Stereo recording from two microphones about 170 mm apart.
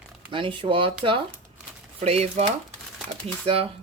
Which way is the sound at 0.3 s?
30° right (ahead or behind).